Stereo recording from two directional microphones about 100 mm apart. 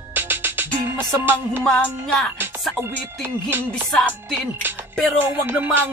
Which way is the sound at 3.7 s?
10° left (ahead or behind).